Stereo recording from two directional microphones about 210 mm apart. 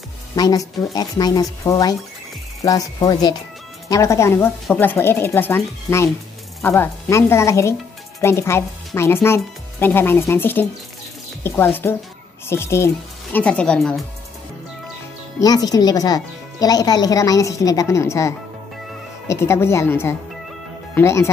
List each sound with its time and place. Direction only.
0.4 s speech: 15° left (ahead or behind)
15.3 s speech: 20° left (ahead or behind)